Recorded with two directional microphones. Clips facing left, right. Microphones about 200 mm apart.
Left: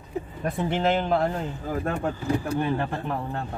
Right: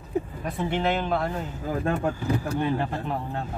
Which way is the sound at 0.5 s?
45° left (ahead or behind).